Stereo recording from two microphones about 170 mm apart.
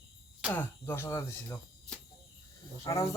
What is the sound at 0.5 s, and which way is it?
Speech, 15° left (ahead or behind).